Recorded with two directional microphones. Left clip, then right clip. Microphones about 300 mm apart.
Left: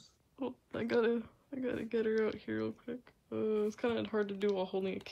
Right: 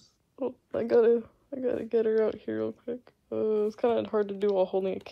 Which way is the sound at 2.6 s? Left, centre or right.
Right.